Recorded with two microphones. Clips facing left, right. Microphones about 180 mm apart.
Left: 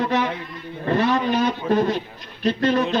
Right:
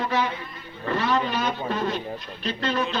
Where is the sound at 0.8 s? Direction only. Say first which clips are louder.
Left 6 dB; 50° left (ahead or behind).